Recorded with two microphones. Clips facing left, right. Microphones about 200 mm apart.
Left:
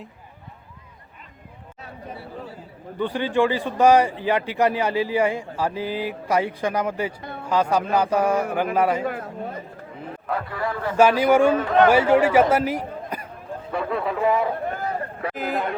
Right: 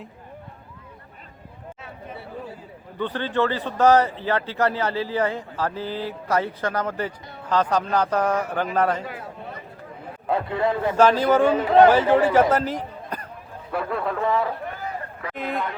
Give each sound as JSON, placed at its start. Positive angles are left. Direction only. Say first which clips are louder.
{"t": 3.0, "sound": "speech", "louder": "left 3 dB", "side_deg": 10}
{"t": 9.0, "sound": "a man's voice", "louder": "left 6 dB", "side_deg": 45}
{"t": 10.2, "sound": "a man's voice", "louder": "right 5 dB", "side_deg": -25}
{"t": 10.9, "sound": "a man's voice", "louder": "left 2 dB", "side_deg": 10}
{"t": 15.4, "sound": "speech", "louder": "left 1 dB", "side_deg": 0}